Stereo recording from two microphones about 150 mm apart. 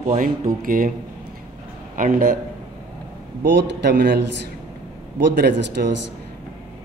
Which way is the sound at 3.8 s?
90° right.